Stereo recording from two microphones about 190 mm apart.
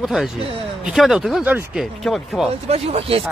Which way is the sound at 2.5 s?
30° right (ahead or behind).